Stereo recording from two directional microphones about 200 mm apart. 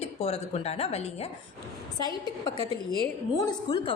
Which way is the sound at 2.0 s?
20° left (ahead or behind).